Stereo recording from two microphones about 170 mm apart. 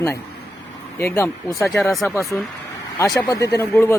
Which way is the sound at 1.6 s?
Centre (ahead or behind).